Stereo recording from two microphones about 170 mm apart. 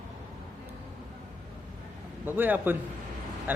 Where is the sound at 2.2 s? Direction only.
10° right (ahead or behind).